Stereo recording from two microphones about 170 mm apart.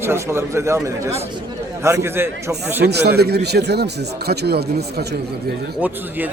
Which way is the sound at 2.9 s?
70° right (ahead or behind).